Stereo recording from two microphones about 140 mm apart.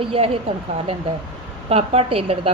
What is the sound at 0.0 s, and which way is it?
Speech, 40° right (ahead or behind).